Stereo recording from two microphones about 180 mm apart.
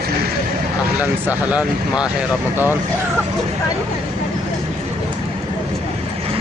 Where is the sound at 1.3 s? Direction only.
10° right (ahead or behind).